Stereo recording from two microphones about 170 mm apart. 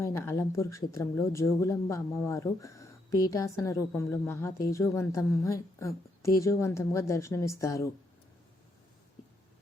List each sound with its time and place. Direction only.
0.0 s a woman's voice: 15° left (ahead or behind)